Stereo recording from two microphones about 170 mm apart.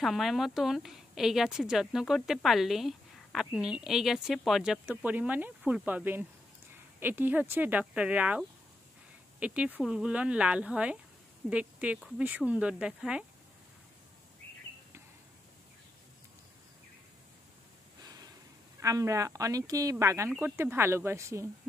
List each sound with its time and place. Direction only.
0.0 s a woman's voice: centre (ahead or behind)
18.8 s speech: 20° right (ahead or behind)